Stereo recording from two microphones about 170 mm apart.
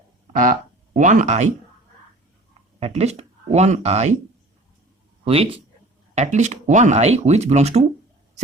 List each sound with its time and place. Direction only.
0.3 s speech: 50° right (ahead or behind)
2.8 s speech: 40° right (ahead or behind)
5.2 s speech: 35° right (ahead or behind)